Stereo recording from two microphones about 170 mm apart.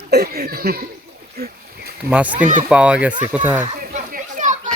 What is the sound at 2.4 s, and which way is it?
Speech, 45° right (ahead or behind).